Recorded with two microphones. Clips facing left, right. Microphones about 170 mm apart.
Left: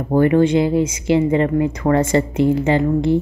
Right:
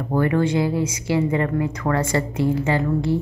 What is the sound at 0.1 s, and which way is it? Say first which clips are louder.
A woman's voice: left 6 dB; 25° left (ahead or behind).